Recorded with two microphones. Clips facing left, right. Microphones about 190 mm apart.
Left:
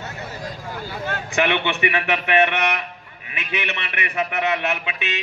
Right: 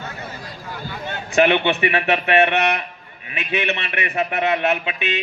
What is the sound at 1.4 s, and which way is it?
Speech, 30° right (ahead or behind).